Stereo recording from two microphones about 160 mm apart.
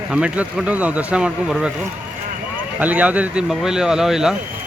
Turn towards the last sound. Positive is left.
turn(degrees=-5)  # may be behind; listen again after turning